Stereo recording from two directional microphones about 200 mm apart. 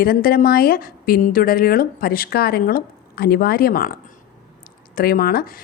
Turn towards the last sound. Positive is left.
turn(degrees=45)  # may be behind; listen again after turning